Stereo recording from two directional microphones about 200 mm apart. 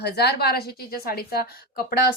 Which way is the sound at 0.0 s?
55° left (ahead or behind).